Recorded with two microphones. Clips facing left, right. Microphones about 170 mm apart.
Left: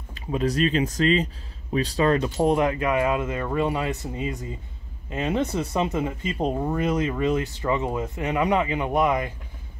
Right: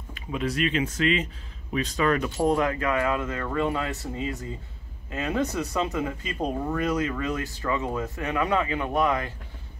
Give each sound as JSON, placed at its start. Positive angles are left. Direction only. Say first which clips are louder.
{"t": 0.1, "sound": "speech", "louder": "left 4 dB", "side_deg": 35}
{"t": 2.2, "sound": "speech", "louder": "left 2 dB", "side_deg": 20}